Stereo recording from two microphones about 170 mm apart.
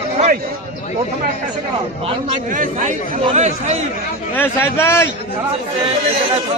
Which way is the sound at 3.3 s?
40° right (ahead or behind).